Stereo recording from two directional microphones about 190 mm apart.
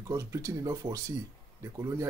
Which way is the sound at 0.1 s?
15° right (ahead or behind).